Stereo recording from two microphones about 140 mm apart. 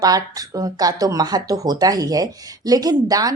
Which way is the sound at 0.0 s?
25° right (ahead or behind).